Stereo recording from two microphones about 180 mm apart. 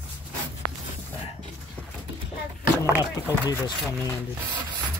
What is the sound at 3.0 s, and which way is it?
Speech, 20° left (ahead or behind).